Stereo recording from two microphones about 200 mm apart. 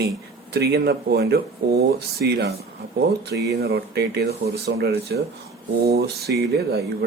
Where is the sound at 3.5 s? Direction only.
55° right (ahead or behind).